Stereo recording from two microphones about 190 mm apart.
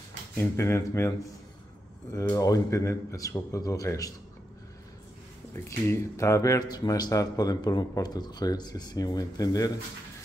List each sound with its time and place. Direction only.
0.6 s speech: 15° left (ahead or behind)
5.5 s speech: 15° left (ahead or behind)